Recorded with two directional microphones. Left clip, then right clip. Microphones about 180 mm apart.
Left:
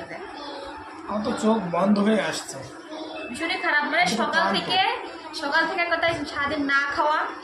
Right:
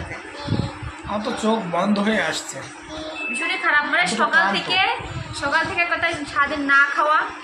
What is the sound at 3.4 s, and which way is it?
A woman's voice, 20° left (ahead or behind).